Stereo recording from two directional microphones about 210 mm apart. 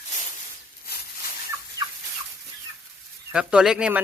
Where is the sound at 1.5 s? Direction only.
15° right (ahead or behind).